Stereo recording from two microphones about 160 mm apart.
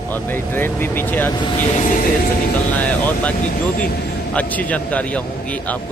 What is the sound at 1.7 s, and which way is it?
Music, 55° left (ahead or behind).